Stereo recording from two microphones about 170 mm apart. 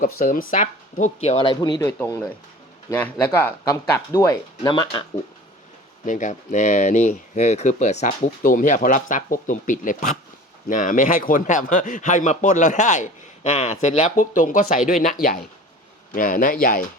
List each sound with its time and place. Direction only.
0.0 s speech: 55° left (ahead or behind); by 1.9 s 25° left (ahead or behind)
1.9 s speech: 15° left (ahead or behind)
4.6 s speech: 30° left (ahead or behind)
6.1 s a man's voice: 45° left (ahead or behind)